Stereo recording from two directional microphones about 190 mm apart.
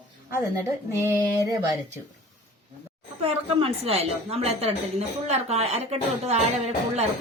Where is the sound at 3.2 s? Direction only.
30° right (ahead or behind).